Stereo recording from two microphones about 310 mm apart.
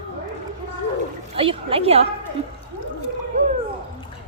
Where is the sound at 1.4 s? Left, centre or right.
Centre.